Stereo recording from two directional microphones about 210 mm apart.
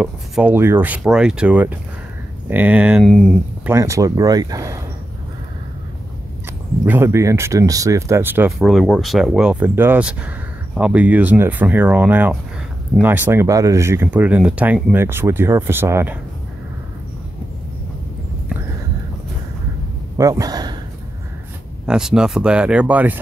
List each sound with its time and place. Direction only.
0.0 s speech: 5° right (ahead or behind)
3.6 s speech: 15° right (ahead or behind)
6.9 s speech: 10° right (ahead or behind)
20.2 s a sound: 15° right (ahead or behind)
21.8 s speech: 5° right (ahead or behind)